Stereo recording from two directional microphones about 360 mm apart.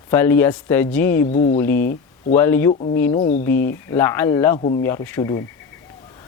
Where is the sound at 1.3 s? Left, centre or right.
Centre.